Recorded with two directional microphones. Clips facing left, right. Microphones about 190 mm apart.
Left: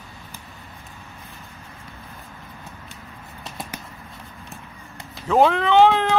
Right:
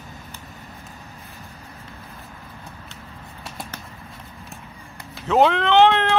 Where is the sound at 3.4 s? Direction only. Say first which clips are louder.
Left 1 dB; 20° left (ahead or behind).